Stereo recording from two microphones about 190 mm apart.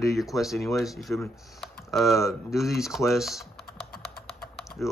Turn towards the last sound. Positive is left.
turn(degrees=10)  # may be behind; listen again after turning